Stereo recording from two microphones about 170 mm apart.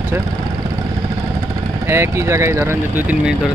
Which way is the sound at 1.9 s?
15° right (ahead or behind).